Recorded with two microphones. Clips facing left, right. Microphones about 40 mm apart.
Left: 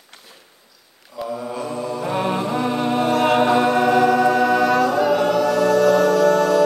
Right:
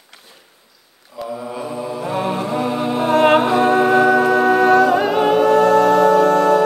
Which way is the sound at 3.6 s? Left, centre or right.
Right.